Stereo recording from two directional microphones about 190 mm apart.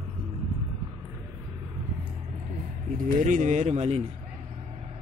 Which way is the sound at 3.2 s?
40° right (ahead or behind).